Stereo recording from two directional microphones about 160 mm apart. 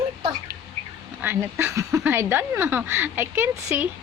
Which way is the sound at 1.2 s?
15° right (ahead or behind).